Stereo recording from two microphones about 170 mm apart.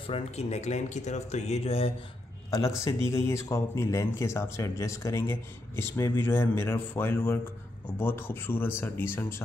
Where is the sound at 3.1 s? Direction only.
15° left (ahead or behind).